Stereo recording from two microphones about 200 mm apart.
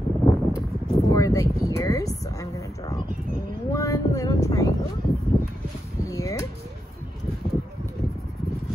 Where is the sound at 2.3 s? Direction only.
15° left (ahead or behind).